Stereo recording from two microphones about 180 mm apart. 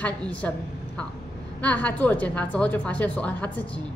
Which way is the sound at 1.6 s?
10° left (ahead or behind).